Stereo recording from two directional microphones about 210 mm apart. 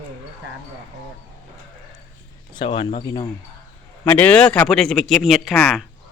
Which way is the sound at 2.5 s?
25° left (ahead or behind).